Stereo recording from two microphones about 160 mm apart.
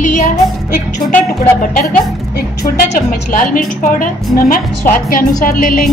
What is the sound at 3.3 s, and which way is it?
A woman's voice, 60° left (ahead or behind).